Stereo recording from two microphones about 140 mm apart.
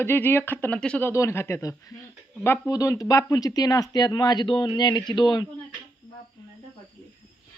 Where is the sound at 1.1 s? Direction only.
20° left (ahead or behind).